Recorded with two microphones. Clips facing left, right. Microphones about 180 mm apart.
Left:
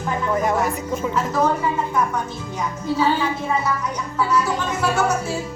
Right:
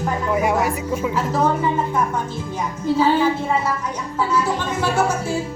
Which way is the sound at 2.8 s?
30° right (ahead or behind).